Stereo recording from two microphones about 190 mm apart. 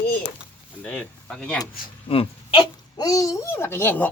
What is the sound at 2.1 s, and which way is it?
Babbling, 30° left (ahead or behind).